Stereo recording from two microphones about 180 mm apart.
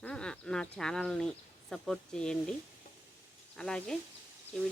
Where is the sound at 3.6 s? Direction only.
5° left (ahead or behind).